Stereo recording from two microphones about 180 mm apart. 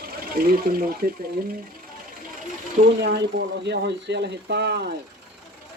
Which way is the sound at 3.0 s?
70° right (ahead or behind).